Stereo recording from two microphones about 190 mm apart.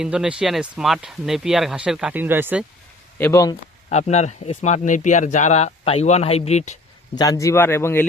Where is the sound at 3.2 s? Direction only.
15° left (ahead or behind).